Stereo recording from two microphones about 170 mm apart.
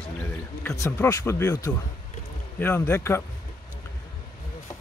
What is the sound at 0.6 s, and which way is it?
Speech, 15° left (ahead or behind).